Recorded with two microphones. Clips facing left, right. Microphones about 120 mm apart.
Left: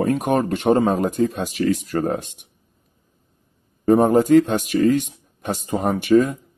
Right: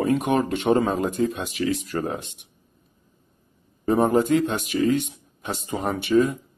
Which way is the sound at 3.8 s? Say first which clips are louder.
Left 5 dB; 50° left (ahead or behind).